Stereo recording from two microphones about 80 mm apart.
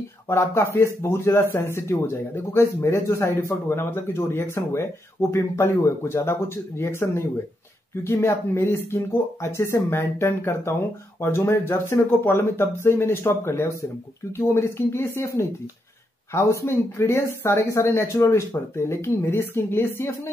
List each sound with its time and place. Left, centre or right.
0.3 s speech: left